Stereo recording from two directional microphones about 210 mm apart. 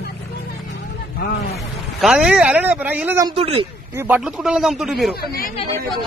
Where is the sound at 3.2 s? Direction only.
25° right (ahead or behind).